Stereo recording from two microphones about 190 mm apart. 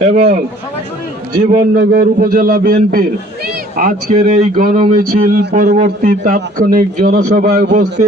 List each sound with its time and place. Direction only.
0.0 s a man's voice: 35° right (ahead or behind)
1.5 s a man's voice: 40° right (ahead or behind)
1.8 s a man's voice: 50° right (ahead or behind)